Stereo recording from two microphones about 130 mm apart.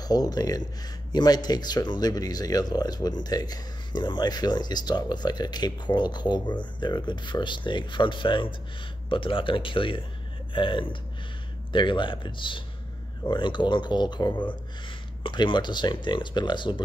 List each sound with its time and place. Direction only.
0.0 s speech: 30° left (ahead or behind)